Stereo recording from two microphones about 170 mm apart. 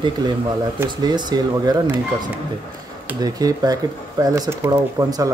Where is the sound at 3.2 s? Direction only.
20° right (ahead or behind).